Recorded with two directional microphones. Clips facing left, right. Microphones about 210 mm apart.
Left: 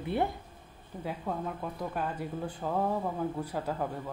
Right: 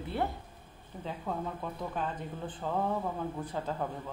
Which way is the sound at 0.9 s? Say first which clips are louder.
Left 2 dB; centre (ahead or behind).